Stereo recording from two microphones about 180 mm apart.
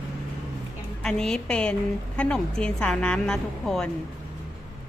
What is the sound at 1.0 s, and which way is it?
A woman's voice, 5° left (ahead or behind).